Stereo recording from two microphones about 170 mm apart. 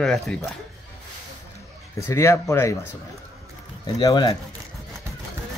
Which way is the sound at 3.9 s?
20° left (ahead or behind).